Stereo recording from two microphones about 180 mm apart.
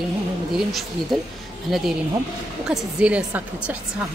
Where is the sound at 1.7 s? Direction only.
Centre (ahead or behind).